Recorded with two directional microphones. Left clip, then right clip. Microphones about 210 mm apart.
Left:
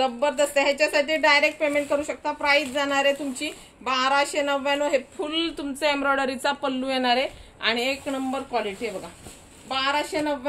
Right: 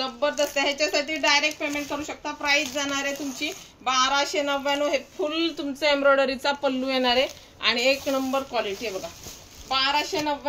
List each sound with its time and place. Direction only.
0.0 s a child's voice: 50° left (ahead or behind); by 10.3 s 25° left (ahead or behind)